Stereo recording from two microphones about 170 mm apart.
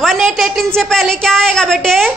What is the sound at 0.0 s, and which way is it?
A woman's voice, centre (ahead or behind).